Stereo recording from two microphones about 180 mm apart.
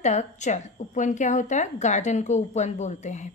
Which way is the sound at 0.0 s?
40° left (ahead or behind).